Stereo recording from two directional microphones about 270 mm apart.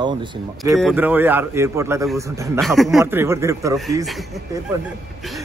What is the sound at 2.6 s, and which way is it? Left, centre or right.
Speech, centre.